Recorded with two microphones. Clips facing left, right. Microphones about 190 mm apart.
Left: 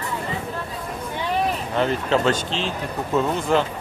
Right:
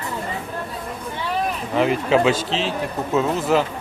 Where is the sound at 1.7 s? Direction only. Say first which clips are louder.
Right 4 dB; 5° right (ahead or behind).